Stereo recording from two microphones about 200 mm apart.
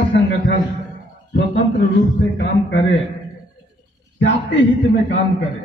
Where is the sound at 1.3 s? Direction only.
55° left (ahead or behind).